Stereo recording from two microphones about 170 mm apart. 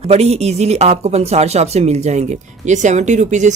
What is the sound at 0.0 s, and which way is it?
Speech, 40° right (ahead or behind).